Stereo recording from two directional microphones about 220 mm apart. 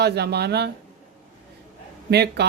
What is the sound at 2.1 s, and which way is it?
Speech, 50° right (ahead or behind).